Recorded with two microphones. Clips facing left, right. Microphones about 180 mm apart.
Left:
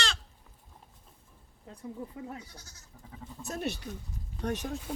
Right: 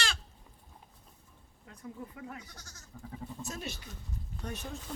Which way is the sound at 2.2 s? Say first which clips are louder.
Left 3 dB; 30° left (ahead or behind).